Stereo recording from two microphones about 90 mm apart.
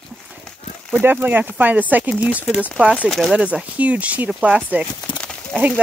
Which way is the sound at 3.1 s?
Centre (ahead or behind).